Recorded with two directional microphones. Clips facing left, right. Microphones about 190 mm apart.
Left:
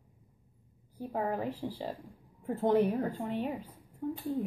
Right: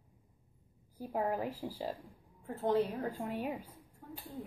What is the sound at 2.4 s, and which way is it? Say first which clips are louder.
Speech: left 5 dB; 15° left (ahead or behind).